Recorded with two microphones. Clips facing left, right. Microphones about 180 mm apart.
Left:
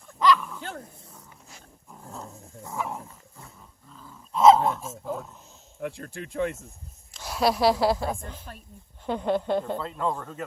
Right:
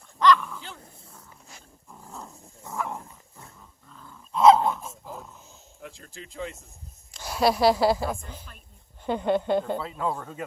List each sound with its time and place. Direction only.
0.2 s dog: 5° left (ahead or behind)
2.7 s dog: 5° left (ahead or behind)
5.8 s speech: 60° left (ahead or behind)
7.1 s a woman's voice: centre (ahead or behind)
8.5 s speech: 45° left (ahead or behind)
9.0 s speech: centre (ahead or behind)